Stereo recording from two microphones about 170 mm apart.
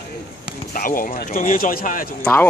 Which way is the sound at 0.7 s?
55° left (ahead or behind).